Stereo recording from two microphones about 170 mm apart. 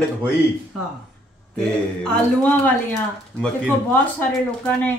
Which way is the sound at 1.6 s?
5° left (ahead or behind).